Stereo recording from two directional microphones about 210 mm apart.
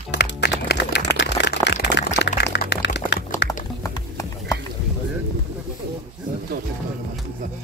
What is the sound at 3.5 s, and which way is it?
Music, 15° left (ahead or behind).